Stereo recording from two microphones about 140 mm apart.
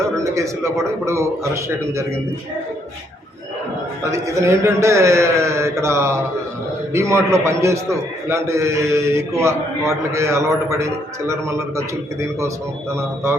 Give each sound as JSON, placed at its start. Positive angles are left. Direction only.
{"t": 0.2, "sound": "a man's voice", "side_deg": -20}
{"t": 4.0, "sound": "a man's voice", "side_deg": -20}